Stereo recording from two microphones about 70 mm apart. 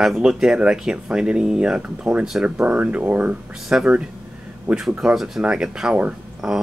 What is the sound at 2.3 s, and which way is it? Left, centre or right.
Speech, centre.